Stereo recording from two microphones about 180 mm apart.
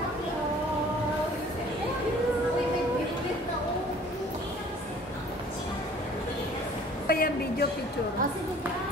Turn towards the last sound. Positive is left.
turn(degrees=55)  # may be behind; listen again after turning